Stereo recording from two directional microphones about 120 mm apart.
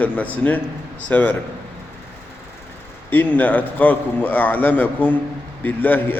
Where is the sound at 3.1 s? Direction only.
15° left (ahead or behind).